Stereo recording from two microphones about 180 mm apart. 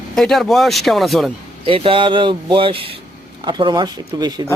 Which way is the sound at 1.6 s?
30° right (ahead or behind).